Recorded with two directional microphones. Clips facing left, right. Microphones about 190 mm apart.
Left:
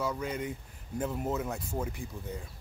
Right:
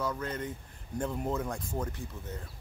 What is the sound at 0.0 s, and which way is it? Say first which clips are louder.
Speech: left 1 dB; 10° left (ahead or behind).